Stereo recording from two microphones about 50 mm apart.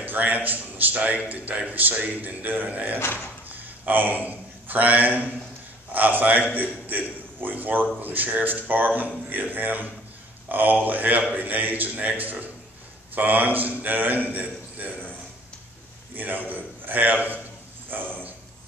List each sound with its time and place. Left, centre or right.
0.0 s a man's voice: right
3.0 s speech: left
3.4 s a man's voice: right
16.2 s a man's voice: right
17.8 s a sound: right